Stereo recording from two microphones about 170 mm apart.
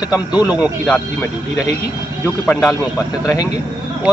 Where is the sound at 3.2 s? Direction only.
20° left (ahead or behind).